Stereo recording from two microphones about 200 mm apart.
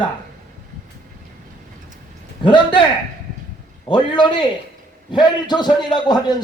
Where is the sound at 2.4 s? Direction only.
25° left (ahead or behind).